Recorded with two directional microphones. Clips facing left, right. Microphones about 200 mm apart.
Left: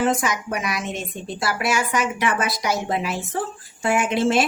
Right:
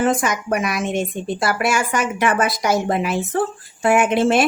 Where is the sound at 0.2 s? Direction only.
55° right (ahead or behind).